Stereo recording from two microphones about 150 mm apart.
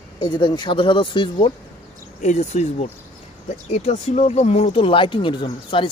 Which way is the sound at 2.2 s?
50° left (ahead or behind).